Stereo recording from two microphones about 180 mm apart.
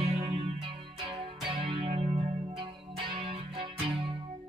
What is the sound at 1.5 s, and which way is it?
Music, 30° right (ahead or behind).